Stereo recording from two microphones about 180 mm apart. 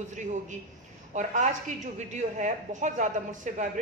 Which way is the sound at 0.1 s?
40° right (ahead or behind).